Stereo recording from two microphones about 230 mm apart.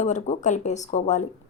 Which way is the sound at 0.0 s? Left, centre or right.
Left.